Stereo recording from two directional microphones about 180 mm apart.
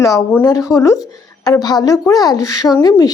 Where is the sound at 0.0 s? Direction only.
20° left (ahead or behind).